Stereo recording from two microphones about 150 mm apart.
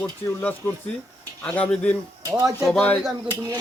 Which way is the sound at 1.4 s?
10° left (ahead or behind).